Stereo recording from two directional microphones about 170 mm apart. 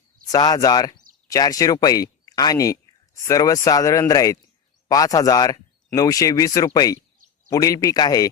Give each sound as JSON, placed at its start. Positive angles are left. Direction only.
{"t": 0.3, "sound": "speech", "side_deg": 20}